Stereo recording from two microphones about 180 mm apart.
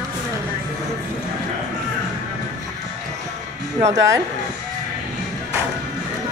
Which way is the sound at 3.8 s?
15° right (ahead or behind).